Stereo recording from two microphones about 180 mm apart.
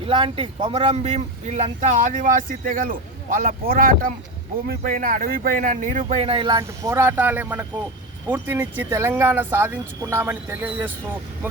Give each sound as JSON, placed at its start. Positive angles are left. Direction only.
{"t": 0.0, "sound": "speech", "side_deg": -30}